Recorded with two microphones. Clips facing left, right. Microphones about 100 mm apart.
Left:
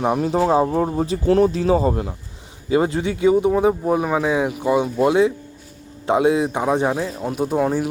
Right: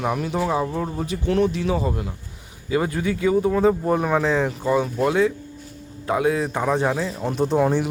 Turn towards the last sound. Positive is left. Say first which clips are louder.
# even
turn(degrees=5)  # may be behind; listen again after turning